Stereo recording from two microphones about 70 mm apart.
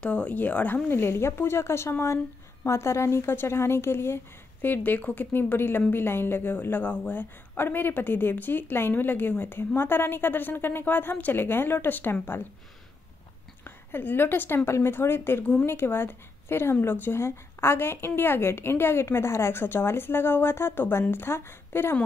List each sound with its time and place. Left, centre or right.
0.0 s a woman's voice: centre; by 12.4 s left
13.7 s a woman's voice: left